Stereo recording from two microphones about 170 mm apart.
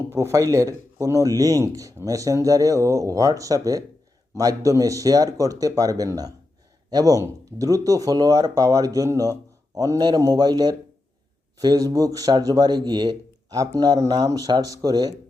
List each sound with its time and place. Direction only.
0.1 s speech: 15° right (ahead or behind)